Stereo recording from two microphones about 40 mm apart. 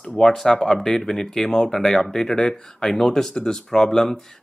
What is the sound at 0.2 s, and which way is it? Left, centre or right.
Speech, centre.